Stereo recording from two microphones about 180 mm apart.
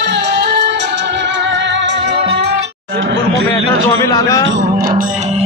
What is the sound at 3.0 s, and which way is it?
Chatter, 90° right.